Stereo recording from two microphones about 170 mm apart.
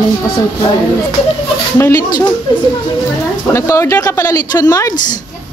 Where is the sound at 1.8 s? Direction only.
15° left (ahead or behind).